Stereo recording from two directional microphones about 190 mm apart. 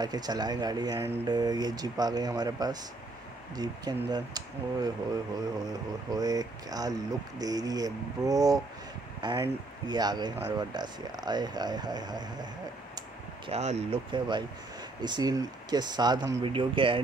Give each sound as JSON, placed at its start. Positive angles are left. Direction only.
{"t": 0.0, "sound": "speech", "side_deg": -20}
{"t": 5.7, "sound": "speech", "side_deg": -20}
{"t": 13.5, "sound": "speech", "side_deg": -35}